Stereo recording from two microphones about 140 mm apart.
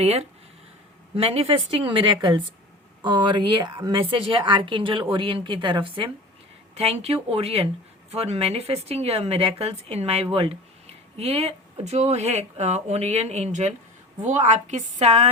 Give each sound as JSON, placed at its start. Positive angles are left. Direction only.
{"t": 0.0, "sound": "a woman's voice", "side_deg": -45}
{"t": 6.7, "sound": "a woman's voice", "side_deg": -50}